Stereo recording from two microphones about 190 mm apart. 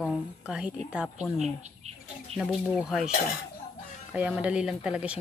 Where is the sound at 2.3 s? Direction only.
Centre (ahead or behind).